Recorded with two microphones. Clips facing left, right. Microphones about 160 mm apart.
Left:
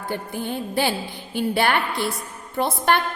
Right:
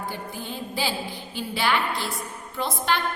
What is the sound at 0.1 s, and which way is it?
A woman's voice, 60° left (ahead or behind).